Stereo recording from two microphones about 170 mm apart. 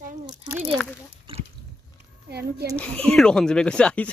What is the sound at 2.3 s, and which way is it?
Speech, 70° right (ahead or behind).